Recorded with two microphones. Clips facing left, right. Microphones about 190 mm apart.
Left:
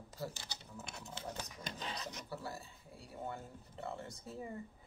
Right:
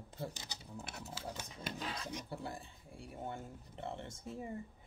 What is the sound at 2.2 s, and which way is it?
Speech, 25° right (ahead or behind).